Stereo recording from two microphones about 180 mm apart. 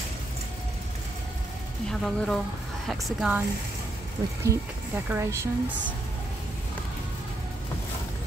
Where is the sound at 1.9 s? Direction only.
5° left (ahead or behind).